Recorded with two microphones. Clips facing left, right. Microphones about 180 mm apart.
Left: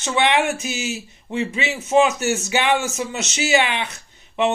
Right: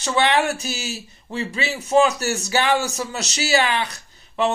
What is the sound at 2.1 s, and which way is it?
Speech, 35° right (ahead or behind).